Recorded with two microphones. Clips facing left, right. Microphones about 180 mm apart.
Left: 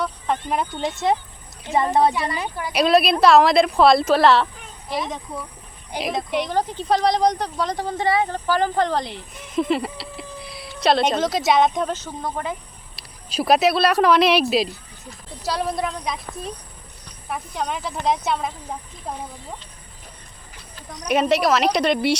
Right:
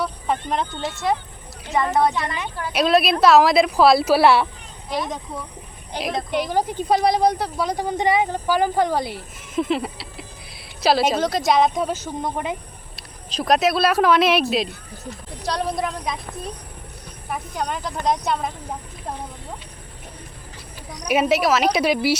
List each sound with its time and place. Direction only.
0.4 s a woman's voice: 10° left (ahead or behind); by 2.5 s 35° left (ahead or behind)
2.7 s speech: centre (ahead or behind)
4.9 s speech: centre (ahead or behind)
6.5 s speech: 10° right (ahead or behind)
13.0 s speech: 5° left (ahead or behind)
17.2 s speech: centre (ahead or behind)
21.1 s speech: 5° right (ahead or behind)